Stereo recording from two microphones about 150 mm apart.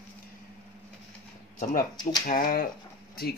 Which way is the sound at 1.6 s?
60° left (ahead or behind).